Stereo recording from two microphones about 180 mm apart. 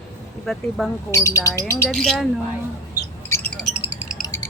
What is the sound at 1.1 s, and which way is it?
Speech, 15° left (ahead or behind).